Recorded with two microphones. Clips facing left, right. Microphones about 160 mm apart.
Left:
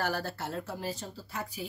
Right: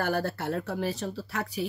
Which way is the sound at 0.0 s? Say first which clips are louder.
Right 5 dB; 55° right (ahead or behind).